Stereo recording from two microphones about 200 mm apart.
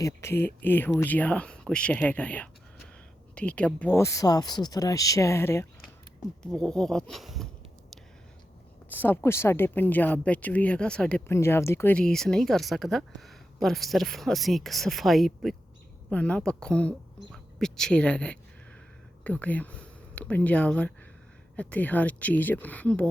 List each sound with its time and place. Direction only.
0.0 s speech: 15° left (ahead or behind)
8.9 s speech: 10° left (ahead or behind)